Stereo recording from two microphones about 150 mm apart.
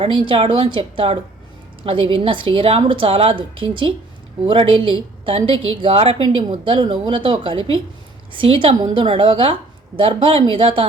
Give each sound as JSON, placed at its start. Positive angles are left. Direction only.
{"t": 0.0, "sound": "a woman's voice", "side_deg": -35}